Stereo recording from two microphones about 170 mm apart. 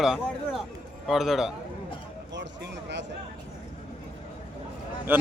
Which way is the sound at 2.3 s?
90° right.